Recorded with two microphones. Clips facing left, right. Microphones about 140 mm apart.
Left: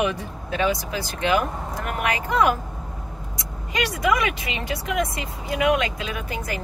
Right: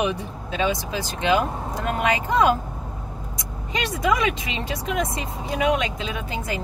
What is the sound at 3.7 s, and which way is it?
Speech, 25° right (ahead or behind).